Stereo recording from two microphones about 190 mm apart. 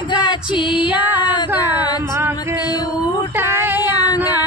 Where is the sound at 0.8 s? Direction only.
10° right (ahead or behind).